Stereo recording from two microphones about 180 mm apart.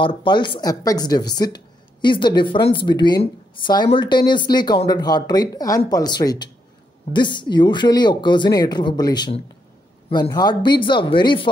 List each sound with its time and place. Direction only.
0.0 s speech: 25° left (ahead or behind)